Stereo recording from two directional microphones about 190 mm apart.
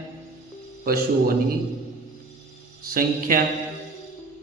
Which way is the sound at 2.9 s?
50° right (ahead or behind).